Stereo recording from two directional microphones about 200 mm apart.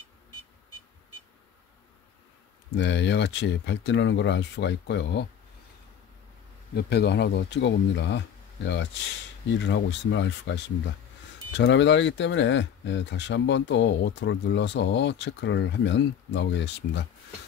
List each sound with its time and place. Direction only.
2.7 s speech: 60° left (ahead or behind)
6.7 s speech: 55° left (ahead or behind)
9.6 s speech: 65° left (ahead or behind)